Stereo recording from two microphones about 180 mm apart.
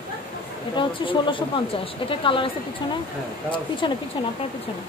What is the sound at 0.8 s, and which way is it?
A woman's voice, 30° left (ahead or behind).